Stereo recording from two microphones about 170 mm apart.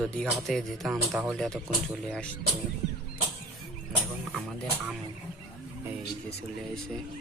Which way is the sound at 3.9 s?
Centre (ahead or behind).